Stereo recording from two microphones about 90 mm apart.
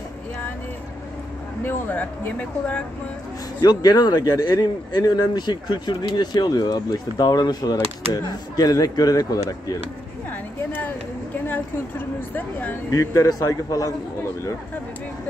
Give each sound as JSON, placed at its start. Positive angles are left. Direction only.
{"t": 1.6, "sound": "speech", "side_deg": 25}
{"t": 3.6, "sound": "speech", "side_deg": 45}
{"t": 10.3, "sound": "a sound", "side_deg": 20}
{"t": 12.4, "sound": "speech", "side_deg": 20}
{"t": 12.9, "sound": "a man's voice", "side_deg": 35}